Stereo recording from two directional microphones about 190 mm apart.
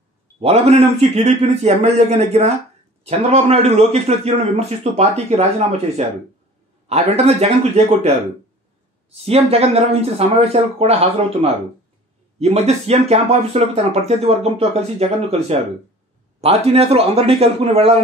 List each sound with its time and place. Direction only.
0.4 s a man's voice: 30° right (ahead or behind)
9.1 s a man's voice: 30° right (ahead or behind)